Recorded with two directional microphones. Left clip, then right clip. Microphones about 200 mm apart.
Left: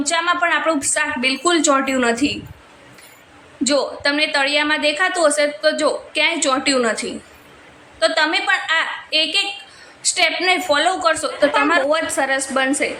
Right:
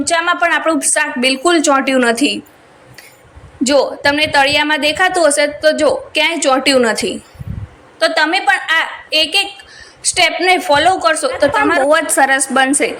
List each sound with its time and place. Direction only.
0.0 s a woman's voice: 20° right (ahead or behind)
3.6 s a woman's voice: 20° right (ahead or behind)